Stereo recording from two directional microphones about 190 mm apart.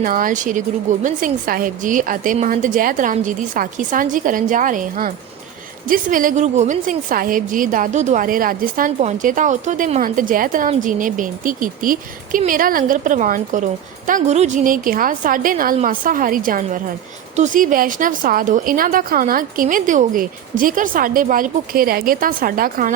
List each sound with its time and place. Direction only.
0.0 s a woman's voice: 45° right (ahead or behind)